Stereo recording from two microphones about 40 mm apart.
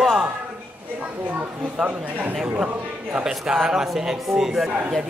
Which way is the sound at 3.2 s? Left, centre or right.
Centre.